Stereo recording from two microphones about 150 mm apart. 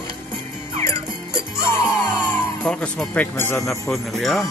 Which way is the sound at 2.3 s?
10° left (ahead or behind).